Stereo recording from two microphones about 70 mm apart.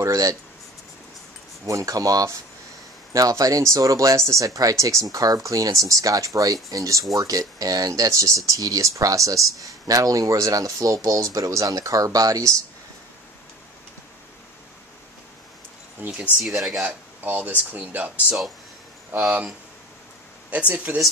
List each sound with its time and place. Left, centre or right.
0.0 s speech: right
1.7 s speech: right
16.0 s speech: centre
16.4 s speech: centre
16.8 s speech: right
20.5 s speech: right